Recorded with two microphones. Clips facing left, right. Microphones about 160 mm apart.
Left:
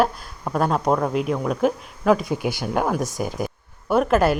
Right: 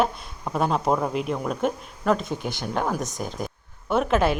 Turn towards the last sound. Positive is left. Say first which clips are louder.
# left 3 dB
turn(degrees=0)  # may be behind; listen again after turning